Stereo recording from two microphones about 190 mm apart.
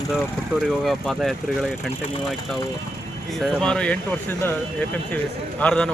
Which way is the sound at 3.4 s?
5° left (ahead or behind).